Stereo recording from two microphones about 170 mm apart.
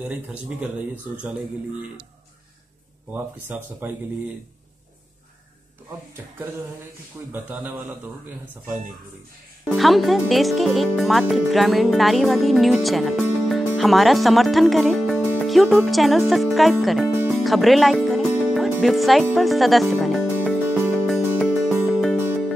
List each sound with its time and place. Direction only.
0.1 s speech: 5° right (ahead or behind)
3.1 s speech: 10° right (ahead or behind)
7.2 s speech: 15° right (ahead or behind)
9.8 s speech: centre (ahead or behind)
17.4 s music: centre (ahead or behind)